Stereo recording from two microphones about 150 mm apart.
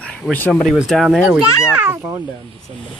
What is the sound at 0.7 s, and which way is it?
A child's voice, centre (ahead or behind).